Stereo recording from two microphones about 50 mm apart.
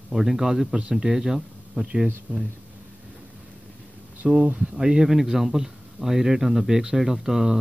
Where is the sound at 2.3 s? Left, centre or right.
Right.